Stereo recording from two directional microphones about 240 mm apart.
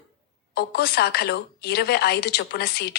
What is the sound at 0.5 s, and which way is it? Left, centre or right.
A woman's voice, left.